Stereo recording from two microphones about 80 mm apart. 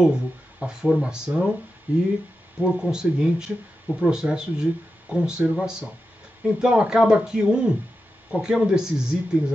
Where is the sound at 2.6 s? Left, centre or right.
Centre.